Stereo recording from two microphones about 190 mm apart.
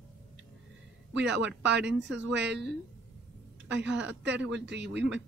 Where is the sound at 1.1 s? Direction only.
65° right (ahead or behind).